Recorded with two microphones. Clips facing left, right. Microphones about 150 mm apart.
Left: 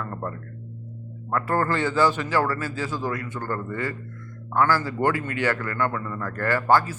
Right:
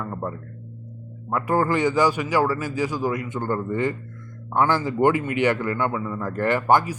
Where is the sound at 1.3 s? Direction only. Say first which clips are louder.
Right 2 dB; 15° right (ahead or behind).